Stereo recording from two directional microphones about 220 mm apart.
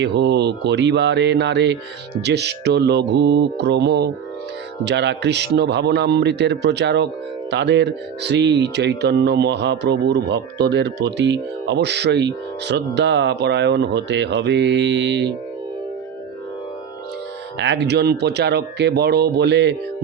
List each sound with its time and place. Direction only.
0.0 s speech: 50° right (ahead or behind)
17.6 s speech: 50° right (ahead or behind)